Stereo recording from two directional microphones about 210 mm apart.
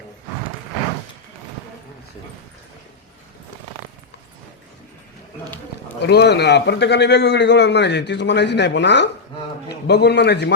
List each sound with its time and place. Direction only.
6.0 s a man's voice: 55° left (ahead or behind)